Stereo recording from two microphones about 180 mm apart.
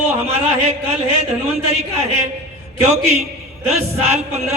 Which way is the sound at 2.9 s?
35° right (ahead or behind).